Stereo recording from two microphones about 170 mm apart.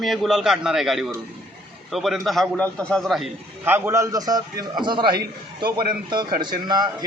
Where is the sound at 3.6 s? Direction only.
10° right (ahead or behind).